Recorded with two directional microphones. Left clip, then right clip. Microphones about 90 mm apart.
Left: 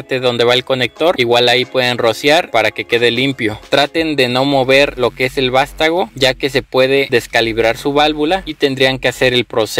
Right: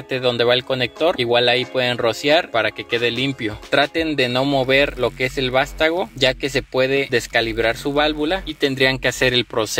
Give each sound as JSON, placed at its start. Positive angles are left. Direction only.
{"t": 0.1, "sound": "a man's voice", "side_deg": 30}
{"t": 3.7, "sound": "a man's voice", "side_deg": 30}